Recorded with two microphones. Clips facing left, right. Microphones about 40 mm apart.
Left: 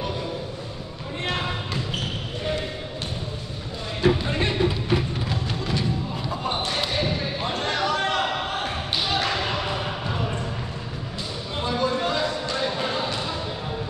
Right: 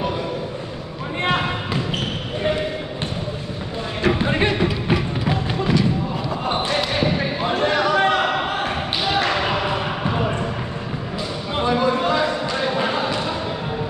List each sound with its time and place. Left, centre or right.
1.2 s basketball bounce: right
4.0 s music: right
6.9 s basketball bounce: right
7.4 s basketball bounce: centre; by 10.3 s right
11.5 s a sound: right